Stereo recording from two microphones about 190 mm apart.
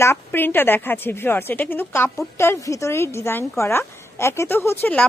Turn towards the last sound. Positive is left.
turn(degrees=10)  # may be behind; listen again after turning